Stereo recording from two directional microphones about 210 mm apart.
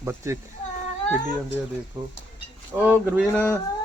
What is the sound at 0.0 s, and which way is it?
Speech, 10° right (ahead or behind).